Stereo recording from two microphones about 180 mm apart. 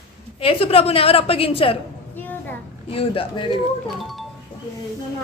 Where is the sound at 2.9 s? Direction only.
30° left (ahead or behind).